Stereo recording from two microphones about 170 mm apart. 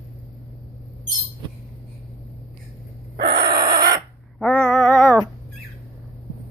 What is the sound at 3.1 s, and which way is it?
Owl, 75° right (ahead or behind).